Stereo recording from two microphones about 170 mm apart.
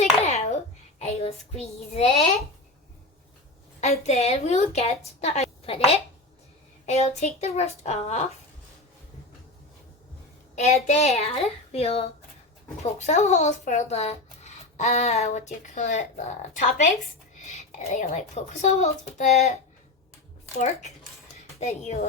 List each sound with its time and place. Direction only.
0.0 s child singing: 40° left (ahead or behind)
3.8 s a woman's voice: 40° left (ahead or behind)
10.5 s a woman's voice: 40° left (ahead or behind)
20.6 s a woman's voice: 45° left (ahead or behind)